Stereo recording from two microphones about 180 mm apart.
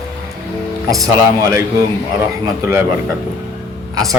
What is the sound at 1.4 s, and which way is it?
A man's voice, 15° right (ahead or behind).